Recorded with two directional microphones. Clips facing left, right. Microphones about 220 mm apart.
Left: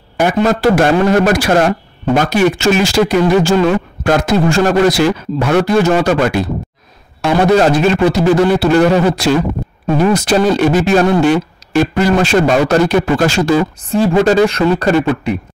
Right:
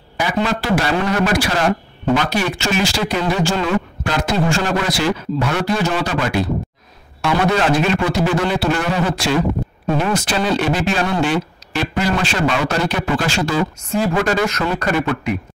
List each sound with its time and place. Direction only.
0.2 s a man's voice: 45° left (ahead or behind)
13.8 s a man's voice: 30° left (ahead or behind)